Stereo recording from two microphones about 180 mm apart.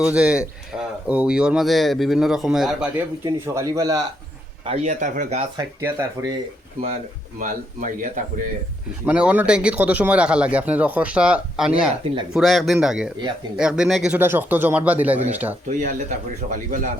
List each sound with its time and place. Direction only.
0.0 s speech: 5° right (ahead or behind)
3.2 s speech: 15° right (ahead or behind)
4.6 s speech: 35° right (ahead or behind)
5.5 s speech: 15° right (ahead or behind)
7.3 s speech: 45° right (ahead or behind)
9.0 s speech: 10° right (ahead or behind)
15.7 s speech: 45° right (ahead or behind)